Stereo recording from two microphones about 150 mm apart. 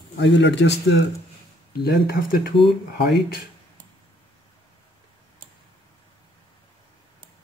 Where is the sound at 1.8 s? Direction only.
70° left (ahead or behind).